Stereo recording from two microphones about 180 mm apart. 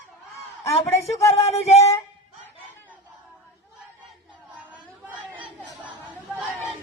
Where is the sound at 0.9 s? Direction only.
15° left (ahead or behind).